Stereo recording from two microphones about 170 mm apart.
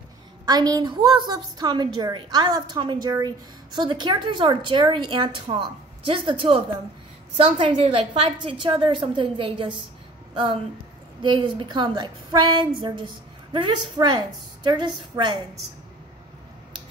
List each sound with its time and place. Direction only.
0.5 s a woman's voice: 25° right (ahead or behind)